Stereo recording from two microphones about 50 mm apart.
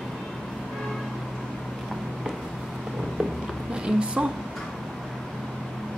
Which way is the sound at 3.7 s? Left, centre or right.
Centre.